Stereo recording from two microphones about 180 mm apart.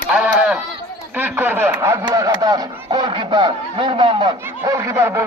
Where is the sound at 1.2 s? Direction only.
10° right (ahead or behind).